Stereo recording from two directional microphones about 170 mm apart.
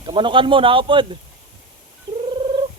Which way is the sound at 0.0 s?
30° right (ahead or behind).